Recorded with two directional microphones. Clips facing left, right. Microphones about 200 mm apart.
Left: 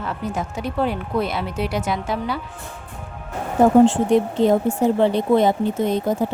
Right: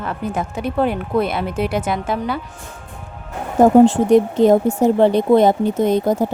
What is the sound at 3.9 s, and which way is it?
Speech, 45° right (ahead or behind).